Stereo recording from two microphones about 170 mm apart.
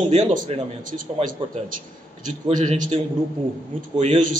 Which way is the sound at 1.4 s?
30° right (ahead or behind).